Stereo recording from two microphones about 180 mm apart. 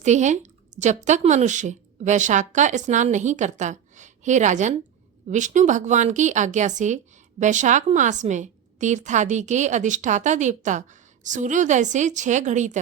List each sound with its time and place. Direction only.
0.0 s a woman's voice: 40° right (ahead or behind)